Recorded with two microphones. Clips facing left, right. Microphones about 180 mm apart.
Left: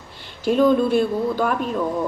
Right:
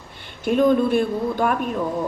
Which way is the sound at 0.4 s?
55° right (ahead or behind).